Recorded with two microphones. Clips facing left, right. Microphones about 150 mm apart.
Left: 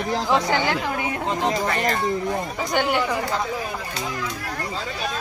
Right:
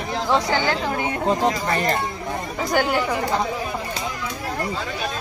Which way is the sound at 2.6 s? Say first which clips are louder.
Right 2 dB; centre (ahead or behind).